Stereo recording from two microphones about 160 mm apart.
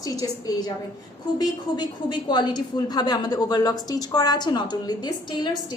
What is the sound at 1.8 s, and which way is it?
A woman's voice, 30° left (ahead or behind).